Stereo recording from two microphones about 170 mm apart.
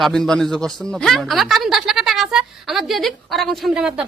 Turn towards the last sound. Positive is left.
turn(degrees=-5)  # may be behind; listen again after turning